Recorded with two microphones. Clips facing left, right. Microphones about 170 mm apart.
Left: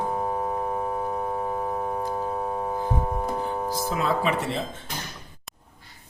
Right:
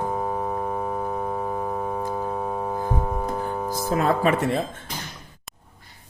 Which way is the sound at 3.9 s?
50° right (ahead or behind).